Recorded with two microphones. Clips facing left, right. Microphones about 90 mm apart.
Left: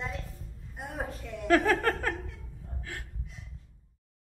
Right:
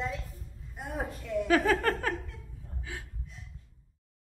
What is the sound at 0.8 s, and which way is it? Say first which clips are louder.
Speech: right 1 dB; centre (ahead or behind).